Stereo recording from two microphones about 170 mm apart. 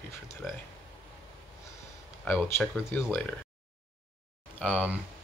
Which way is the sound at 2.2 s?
10° left (ahead or behind).